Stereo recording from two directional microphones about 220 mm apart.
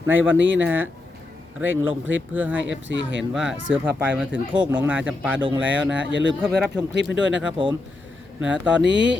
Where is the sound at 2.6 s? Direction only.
55° right (ahead or behind).